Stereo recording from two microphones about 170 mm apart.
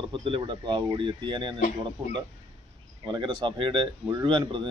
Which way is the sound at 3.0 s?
25° right (ahead or behind).